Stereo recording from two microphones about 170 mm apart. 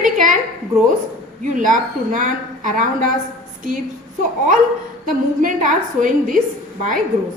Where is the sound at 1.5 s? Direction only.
50° right (ahead or behind).